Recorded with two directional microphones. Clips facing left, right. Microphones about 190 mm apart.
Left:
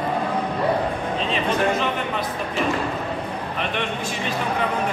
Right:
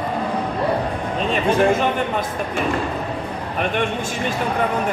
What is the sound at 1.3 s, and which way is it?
Speech, 50° right (ahead or behind).